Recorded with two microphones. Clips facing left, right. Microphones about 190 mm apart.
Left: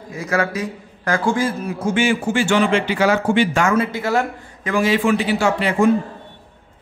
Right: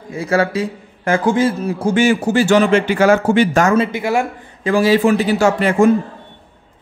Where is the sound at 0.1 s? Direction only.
30° right (ahead or behind).